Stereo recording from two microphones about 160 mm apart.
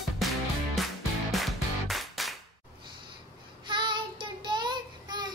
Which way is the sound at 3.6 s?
30° right (ahead or behind).